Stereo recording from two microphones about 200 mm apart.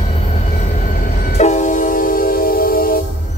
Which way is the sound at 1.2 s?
35° left (ahead or behind).